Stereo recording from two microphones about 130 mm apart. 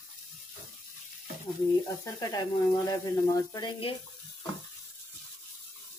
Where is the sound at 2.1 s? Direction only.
30° left (ahead or behind).